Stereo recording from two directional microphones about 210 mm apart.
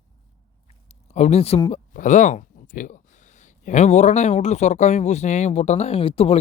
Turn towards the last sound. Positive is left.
turn(degrees=30)  # may be behind; listen again after turning